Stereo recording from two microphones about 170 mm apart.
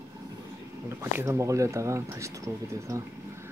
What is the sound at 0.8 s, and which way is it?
Speech, 15° right (ahead or behind).